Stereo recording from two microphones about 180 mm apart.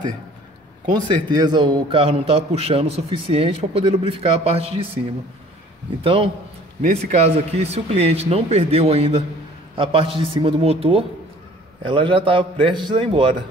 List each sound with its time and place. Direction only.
1.0 s a man's voice: 25° right (ahead or behind)
6.0 s a man's voice: 30° right (ahead or behind)